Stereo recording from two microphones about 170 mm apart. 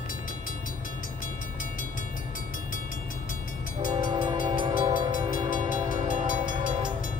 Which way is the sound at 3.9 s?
25° right (ahead or behind).